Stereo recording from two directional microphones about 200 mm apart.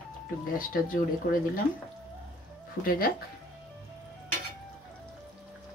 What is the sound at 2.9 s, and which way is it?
Speech, 45° left (ahead or behind).